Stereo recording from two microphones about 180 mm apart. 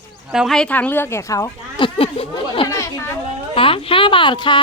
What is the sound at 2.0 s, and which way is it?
Speech, 30° left (ahead or behind).